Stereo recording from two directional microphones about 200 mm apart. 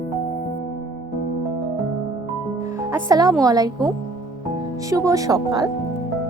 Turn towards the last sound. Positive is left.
turn(degrees=-15)  # may be behind; listen again after turning